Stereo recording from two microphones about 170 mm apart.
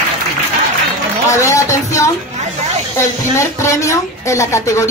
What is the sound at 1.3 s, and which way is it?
Speech, 15° left (ahead or behind).